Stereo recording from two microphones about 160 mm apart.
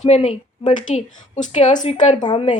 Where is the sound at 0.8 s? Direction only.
50° left (ahead or behind).